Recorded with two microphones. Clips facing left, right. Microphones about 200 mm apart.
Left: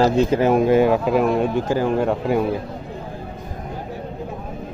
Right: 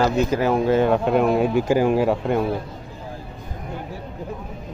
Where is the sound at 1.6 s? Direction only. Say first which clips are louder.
Right 1 dB; 10° right (ahead or behind).